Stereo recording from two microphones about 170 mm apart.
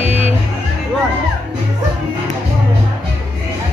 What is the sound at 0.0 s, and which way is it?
Music, 35° left (ahead or behind).